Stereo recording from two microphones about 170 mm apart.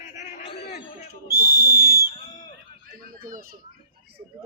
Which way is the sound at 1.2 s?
60° right (ahead or behind).